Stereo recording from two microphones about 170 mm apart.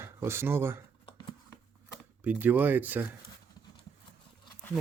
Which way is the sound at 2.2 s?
10° right (ahead or behind).